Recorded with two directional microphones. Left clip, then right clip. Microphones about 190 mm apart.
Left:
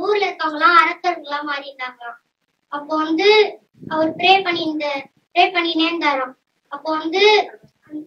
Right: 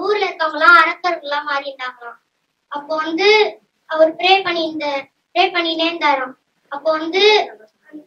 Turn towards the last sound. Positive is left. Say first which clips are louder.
# right 1 dB
turn(degrees=25)  # may be behind; listen again after turning